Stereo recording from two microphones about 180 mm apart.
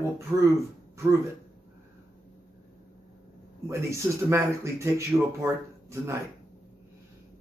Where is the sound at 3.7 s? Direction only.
15° right (ahead or behind).